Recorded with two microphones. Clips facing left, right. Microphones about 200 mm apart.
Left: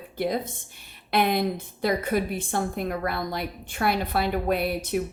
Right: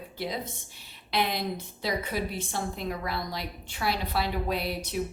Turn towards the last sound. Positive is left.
turn(degrees=55)  # may be behind; listen again after turning